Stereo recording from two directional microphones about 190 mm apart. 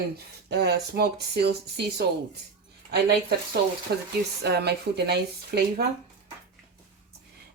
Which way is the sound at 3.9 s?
60° right (ahead or behind).